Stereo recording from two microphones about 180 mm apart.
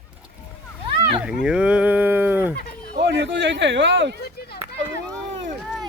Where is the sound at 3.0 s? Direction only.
85° right.